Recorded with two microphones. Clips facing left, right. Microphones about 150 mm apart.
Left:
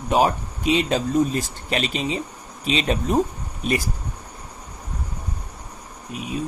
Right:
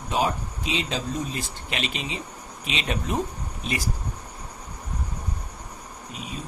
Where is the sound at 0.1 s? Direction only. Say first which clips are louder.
Left 6 dB; 55° left (ahead or behind); by 3.2 s 35° left (ahead or behind).